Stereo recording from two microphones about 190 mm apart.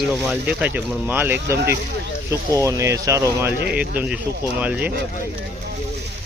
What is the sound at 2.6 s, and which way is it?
Speech, 15° right (ahead or behind).